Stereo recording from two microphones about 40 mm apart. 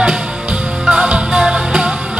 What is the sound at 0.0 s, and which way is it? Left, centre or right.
Music, right.